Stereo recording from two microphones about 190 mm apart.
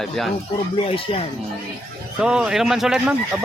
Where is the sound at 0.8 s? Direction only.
30° left (ahead or behind).